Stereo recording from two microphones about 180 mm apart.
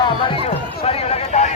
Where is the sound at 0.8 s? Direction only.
35° left (ahead or behind).